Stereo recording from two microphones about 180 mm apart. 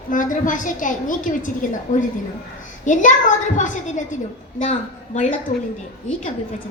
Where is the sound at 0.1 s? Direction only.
45° left (ahead or behind).